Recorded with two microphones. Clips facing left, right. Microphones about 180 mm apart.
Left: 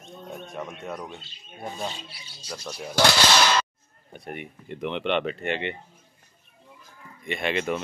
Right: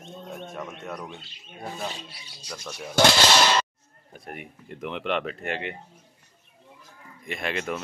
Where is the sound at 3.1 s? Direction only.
5° right (ahead or behind).